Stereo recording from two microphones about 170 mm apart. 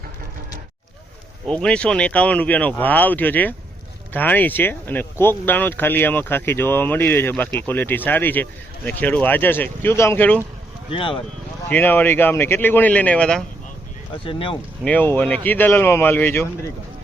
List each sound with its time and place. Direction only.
1.5 s speech: 5° left (ahead or behind)
10.9 s speech: 30° left (ahead or behind)
11.7 s speech: 10° left (ahead or behind)
14.3 s speech: 30° left (ahead or behind)
14.8 s speech: 10° left (ahead or behind)